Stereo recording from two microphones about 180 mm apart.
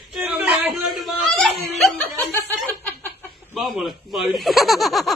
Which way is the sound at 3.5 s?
Centre (ahead or behind).